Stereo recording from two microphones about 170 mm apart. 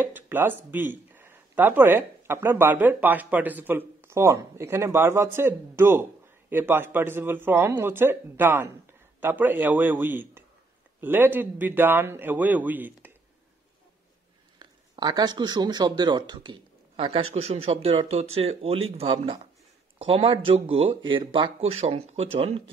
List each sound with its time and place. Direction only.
0.0 s speech: 10° right (ahead or behind)
14.6 s speech: 25° right (ahead or behind)